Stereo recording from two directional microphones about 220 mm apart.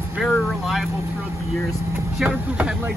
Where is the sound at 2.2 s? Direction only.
5° right (ahead or behind).